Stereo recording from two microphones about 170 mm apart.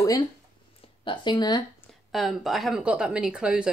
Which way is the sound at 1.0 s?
25° left (ahead or behind).